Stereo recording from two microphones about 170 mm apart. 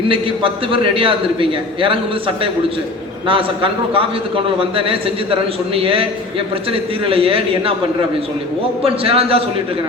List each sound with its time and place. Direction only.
0.1 s a man's voice: 30° right (ahead or behind)
8.8 s a man's voice: 35° right (ahead or behind)